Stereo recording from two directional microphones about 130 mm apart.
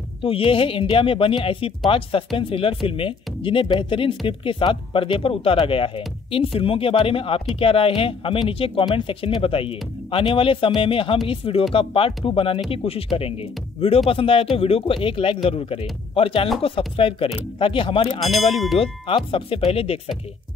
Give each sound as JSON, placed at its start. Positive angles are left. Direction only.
{"t": 0.2, "sound": "speech", "side_deg": 45}
{"t": 18.2, "sound": "speech", "side_deg": 0}
{"t": 18.8, "sound": "speech", "side_deg": 45}